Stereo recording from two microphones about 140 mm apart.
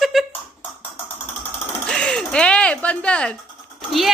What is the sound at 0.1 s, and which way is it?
Beatboxing, centre (ahead or behind).